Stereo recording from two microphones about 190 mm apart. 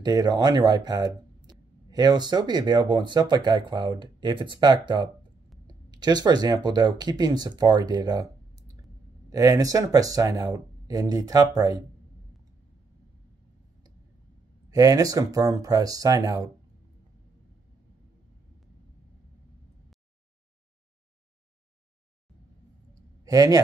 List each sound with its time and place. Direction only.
0.0 s speech: 20° right (ahead or behind)
14.7 s speech: 20° right (ahead or behind)
23.2 s speech: 20° right (ahead or behind)